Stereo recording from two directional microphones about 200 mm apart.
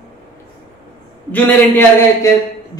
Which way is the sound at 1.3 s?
10° left (ahead or behind).